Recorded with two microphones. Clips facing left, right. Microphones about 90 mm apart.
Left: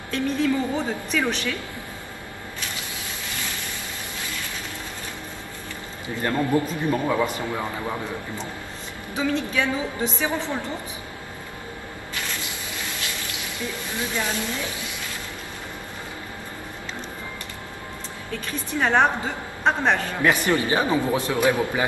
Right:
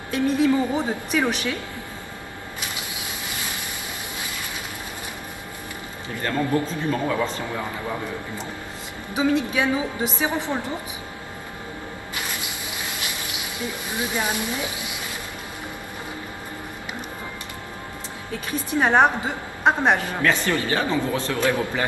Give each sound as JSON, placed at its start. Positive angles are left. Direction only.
{"t": 0.1, "sound": "speech", "side_deg": -15}
{"t": 6.0, "sound": "a man's voice", "side_deg": 20}
{"t": 9.1, "sound": "speech", "side_deg": -15}
{"t": 14.1, "sound": "speech", "side_deg": -15}
{"t": 18.8, "sound": "speech", "side_deg": -15}
{"t": 20.2, "sound": "a man's voice", "side_deg": 15}